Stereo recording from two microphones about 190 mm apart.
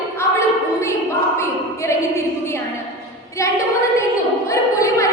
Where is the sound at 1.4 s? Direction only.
15° left (ahead or behind).